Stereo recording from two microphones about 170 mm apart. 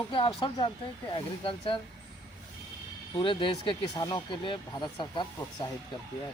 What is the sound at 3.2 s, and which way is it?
Speech, 30° left (ahead or behind).